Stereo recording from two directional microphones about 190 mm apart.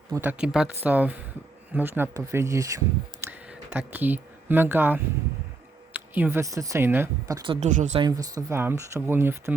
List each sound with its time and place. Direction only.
0.1 s speech: 10° right (ahead or behind)
3.2 s a sound: 5° right (ahead or behind)
5.9 s speech: 10° right (ahead or behind)
7.6 s speech: 40° right (ahead or behind)
7.9 s speech: 20° right (ahead or behind)